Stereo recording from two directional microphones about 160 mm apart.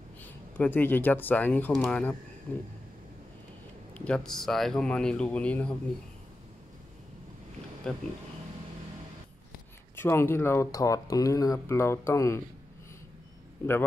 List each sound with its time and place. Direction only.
0.2 s speech: 10° left (ahead or behind)
3.9 s speech: 5° left (ahead or behind)
7.8 s speech: 5° left (ahead or behind)
9.9 s speech: 15° left (ahead or behind)